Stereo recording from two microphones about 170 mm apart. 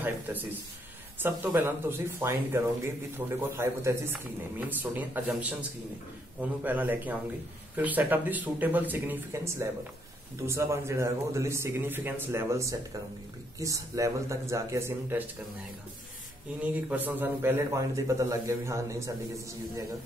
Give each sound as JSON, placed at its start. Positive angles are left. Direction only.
{"t": 0.0, "sound": "speech", "side_deg": -10}
{"t": 16.6, "sound": "speech", "side_deg": -10}